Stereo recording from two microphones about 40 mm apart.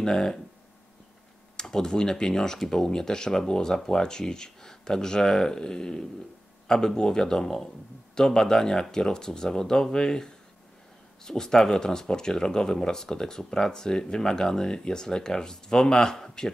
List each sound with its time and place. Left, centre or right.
0.0 s speech: centre
1.6 s speech: centre